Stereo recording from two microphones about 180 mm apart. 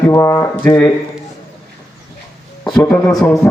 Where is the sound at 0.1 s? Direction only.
15° left (ahead or behind).